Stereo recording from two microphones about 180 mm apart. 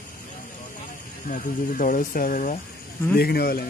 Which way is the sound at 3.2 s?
60° left (ahead or behind).